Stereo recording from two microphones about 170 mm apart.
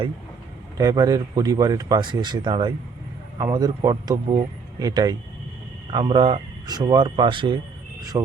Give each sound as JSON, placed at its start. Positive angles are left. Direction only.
{"t": 0.8, "sound": "speech", "side_deg": -20}